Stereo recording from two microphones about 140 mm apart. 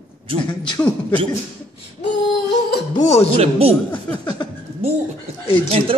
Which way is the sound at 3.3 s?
45° right (ahead or behind).